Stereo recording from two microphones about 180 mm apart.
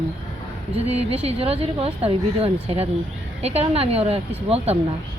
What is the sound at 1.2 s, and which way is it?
Speech, 35° right (ahead or behind).